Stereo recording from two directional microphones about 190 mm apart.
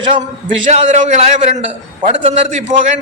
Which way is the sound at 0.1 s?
40° right (ahead or behind).